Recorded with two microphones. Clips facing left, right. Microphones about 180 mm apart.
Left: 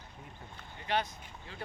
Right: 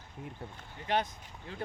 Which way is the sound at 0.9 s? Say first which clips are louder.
Right 2 dB; 45° right (ahead or behind).